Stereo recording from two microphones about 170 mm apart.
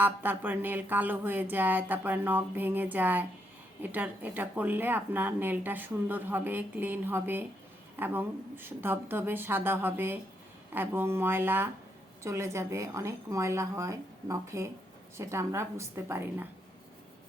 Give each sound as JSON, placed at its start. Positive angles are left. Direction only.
{"t": 0.0, "sound": "speech", "side_deg": -10}